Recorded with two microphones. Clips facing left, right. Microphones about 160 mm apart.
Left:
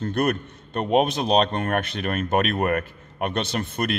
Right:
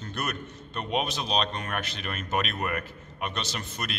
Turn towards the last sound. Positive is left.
turn(degrees=55)  # may be behind; listen again after turning